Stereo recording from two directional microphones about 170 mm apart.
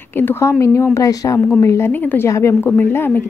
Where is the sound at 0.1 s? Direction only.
15° left (ahead or behind).